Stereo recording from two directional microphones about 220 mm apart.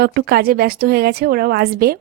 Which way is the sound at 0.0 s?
45° right (ahead or behind).